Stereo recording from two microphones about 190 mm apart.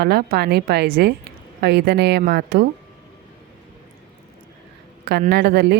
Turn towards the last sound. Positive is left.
turn(degrees=-60)  # may be behind; listen again after turning